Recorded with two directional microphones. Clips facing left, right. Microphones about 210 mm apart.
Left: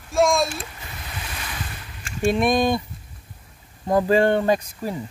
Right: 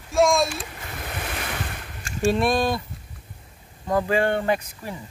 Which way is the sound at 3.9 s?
35° left (ahead or behind).